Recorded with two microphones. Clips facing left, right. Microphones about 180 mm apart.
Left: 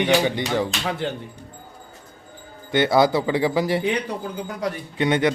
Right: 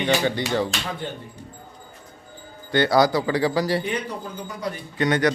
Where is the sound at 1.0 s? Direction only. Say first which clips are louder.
Left 5 dB; 80° left.